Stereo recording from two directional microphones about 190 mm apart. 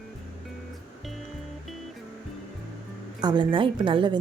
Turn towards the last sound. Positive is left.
turn(degrees=-25)  # may be behind; listen again after turning